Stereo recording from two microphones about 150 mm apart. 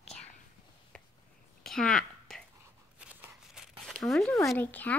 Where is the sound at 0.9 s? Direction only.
5° left (ahead or behind).